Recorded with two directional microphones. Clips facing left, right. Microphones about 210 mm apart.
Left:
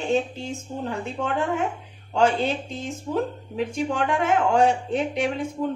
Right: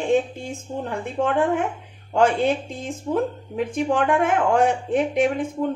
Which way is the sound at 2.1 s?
50° right (ahead or behind).